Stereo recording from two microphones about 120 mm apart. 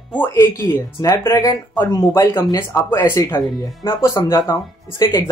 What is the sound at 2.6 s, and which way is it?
Speech, 20° left (ahead or behind).